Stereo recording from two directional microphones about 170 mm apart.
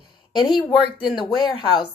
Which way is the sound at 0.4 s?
25° left (ahead or behind).